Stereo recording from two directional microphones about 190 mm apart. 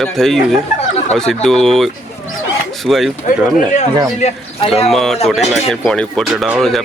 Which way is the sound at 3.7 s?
35° left (ahead or behind).